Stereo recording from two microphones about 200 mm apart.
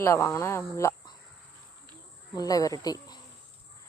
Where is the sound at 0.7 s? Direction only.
15° left (ahead or behind).